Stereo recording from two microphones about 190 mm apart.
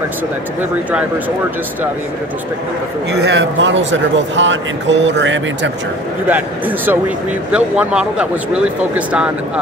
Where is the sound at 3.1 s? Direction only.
65° right (ahead or behind).